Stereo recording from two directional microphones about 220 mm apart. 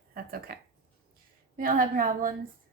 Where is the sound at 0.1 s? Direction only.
40° right (ahead or behind).